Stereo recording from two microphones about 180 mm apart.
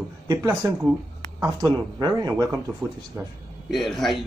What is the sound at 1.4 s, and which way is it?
Speech, 20° right (ahead or behind).